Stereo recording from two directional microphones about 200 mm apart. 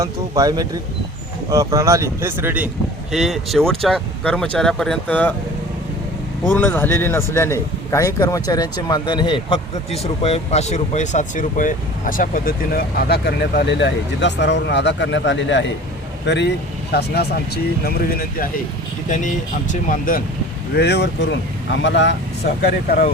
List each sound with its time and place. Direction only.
0.0 s speech: 20° right (ahead or behind); by 5.3 s 5° left (ahead or behind)
6.5 s a man's voice: 10° left (ahead or behind); by 20.2 s 40° left (ahead or behind)
20.7 s speech: 55° left (ahead or behind)
22.6 s speech: 50° left (ahead or behind)